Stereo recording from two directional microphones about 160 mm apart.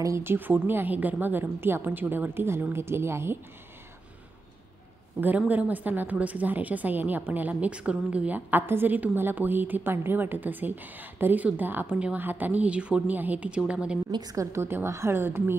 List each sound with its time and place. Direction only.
0.0 s a woman's voice: 15° right (ahead or behind)
5.5 s a woman's voice: 10° right (ahead or behind)
14.1 s a woman's voice: 20° right (ahead or behind)